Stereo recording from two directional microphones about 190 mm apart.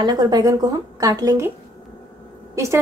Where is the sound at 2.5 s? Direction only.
15° right (ahead or behind).